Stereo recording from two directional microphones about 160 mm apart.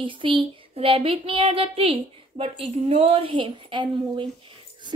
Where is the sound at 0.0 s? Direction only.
30° right (ahead or behind).